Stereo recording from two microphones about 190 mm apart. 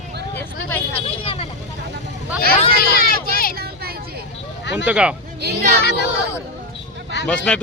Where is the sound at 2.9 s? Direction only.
50° left (ahead or behind).